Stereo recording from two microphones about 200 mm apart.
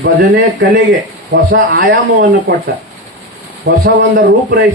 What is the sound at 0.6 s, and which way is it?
A man's voice, 60° right (ahead or behind).